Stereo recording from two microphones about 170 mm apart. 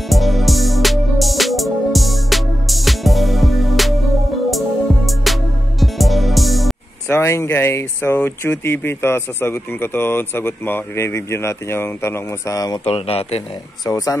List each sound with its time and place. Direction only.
0.1 s music: centre (ahead or behind)
7.1 s speech: 15° left (ahead or behind)
12.8 s speech: 35° left (ahead or behind)
13.8 s speech: 20° left (ahead or behind)